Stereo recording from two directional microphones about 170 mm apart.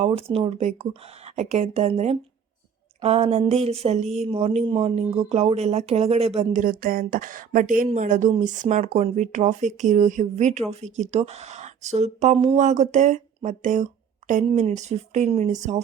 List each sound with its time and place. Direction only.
0.0 s a woman's voice: 35° right (ahead or behind)